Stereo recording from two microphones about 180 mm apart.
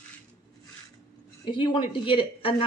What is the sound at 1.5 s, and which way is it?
A woman's voice, 25° left (ahead or behind).